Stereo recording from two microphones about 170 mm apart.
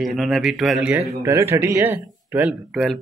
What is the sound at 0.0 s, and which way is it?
Speech, centre (ahead or behind).